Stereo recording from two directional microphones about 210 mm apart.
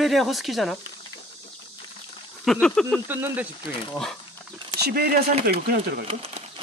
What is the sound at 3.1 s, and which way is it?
Speech, 10° right (ahead or behind).